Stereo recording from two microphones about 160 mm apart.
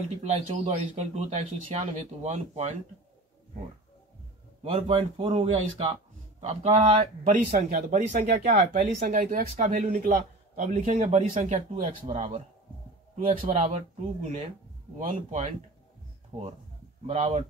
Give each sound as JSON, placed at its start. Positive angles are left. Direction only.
{"t": 0.2, "sound": "speech", "side_deg": -45}
{"t": 4.6, "sound": "speech", "side_deg": -35}
{"t": 8.2, "sound": "speech", "side_deg": -70}
{"t": 13.1, "sound": "speech", "side_deg": -45}
{"t": 17.0, "sound": "speech", "side_deg": -40}